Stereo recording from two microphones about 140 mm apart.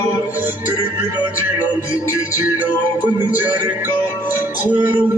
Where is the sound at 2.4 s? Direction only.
15° right (ahead or behind).